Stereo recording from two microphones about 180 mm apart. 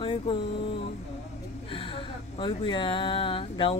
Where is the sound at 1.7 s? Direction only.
30° left (ahead or behind).